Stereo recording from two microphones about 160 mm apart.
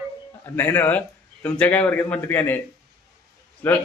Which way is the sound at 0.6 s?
10° left (ahead or behind).